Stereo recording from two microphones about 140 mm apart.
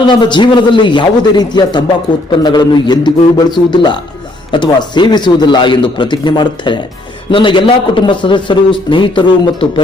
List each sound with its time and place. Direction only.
0.0 s a man's voice: 35° left (ahead or behind)